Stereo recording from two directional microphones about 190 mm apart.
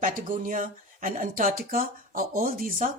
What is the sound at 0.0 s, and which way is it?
Speech, 40° right (ahead or behind).